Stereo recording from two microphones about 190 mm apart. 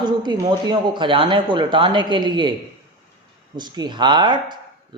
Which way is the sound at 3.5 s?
25° right (ahead or behind).